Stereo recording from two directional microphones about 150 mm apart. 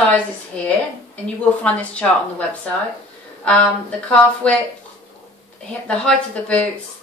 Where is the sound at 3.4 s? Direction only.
10° left (ahead or behind).